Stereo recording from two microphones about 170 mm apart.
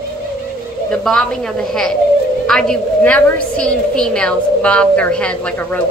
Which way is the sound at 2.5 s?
5° left (ahead or behind).